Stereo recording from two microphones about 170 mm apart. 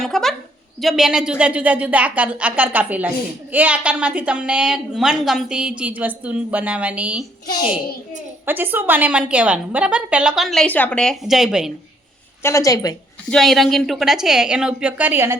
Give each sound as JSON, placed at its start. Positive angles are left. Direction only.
{"t": 0.0, "sound": "a sound", "side_deg": 0}
{"t": 0.8, "sound": "a woman's voice", "side_deg": 0}
{"t": 8.4, "sound": "a woman's voice", "side_deg": -10}
{"t": 12.4, "sound": "a woman's voice", "side_deg": 15}
{"t": 13.3, "sound": "a woman's voice", "side_deg": 0}